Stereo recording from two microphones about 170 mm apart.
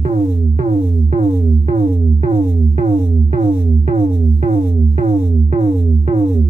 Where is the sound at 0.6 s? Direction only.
60° right (ahead or behind).